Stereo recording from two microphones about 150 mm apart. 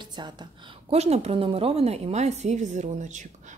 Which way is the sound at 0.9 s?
45° right (ahead or behind).